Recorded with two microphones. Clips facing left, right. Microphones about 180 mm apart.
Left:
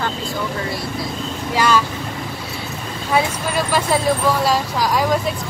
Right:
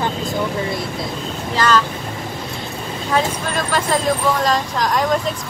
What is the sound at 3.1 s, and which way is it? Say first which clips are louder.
Speech: left 1 dB; 10° left (ahead or behind).